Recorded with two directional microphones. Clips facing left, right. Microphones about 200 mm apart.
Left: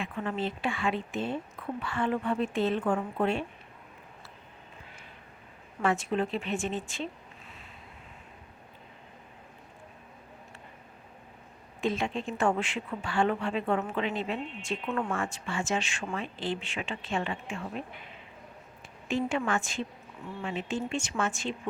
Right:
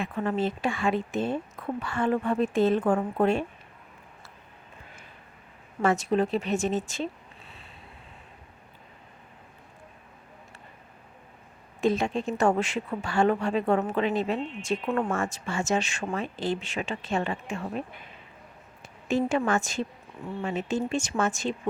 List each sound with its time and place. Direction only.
0.0 s a woman's voice: 40° right (ahead or behind)
5.8 s speech: 40° right (ahead or behind)
11.8 s a woman's voice: 40° right (ahead or behind)